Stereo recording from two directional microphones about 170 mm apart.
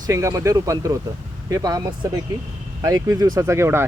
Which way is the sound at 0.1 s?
20° right (ahead or behind).